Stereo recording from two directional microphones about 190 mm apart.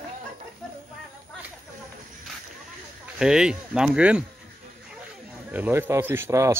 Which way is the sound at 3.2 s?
5° right (ahead or behind).